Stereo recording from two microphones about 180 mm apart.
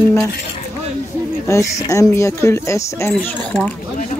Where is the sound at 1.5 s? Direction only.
15° left (ahead or behind).